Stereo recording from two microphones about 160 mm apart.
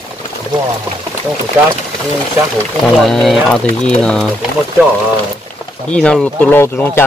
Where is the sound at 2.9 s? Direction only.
Centre (ahead or behind).